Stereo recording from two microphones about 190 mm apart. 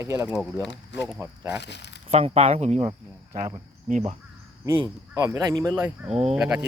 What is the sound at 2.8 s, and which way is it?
Speech, 20° right (ahead or behind).